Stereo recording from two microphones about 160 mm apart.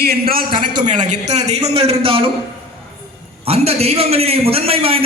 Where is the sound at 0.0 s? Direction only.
75° right (ahead or behind).